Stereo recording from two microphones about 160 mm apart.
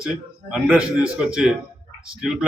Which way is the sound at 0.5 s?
5° right (ahead or behind).